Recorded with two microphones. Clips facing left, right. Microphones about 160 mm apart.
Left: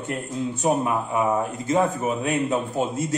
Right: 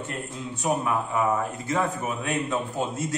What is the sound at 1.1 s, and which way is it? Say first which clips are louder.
A man's voice: left 2 dB; 20° left (ahead or behind).